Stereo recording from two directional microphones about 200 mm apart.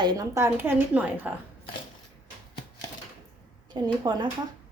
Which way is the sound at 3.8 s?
20° right (ahead or behind).